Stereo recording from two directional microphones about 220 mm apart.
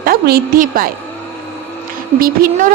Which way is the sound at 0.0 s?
40° right (ahead or behind).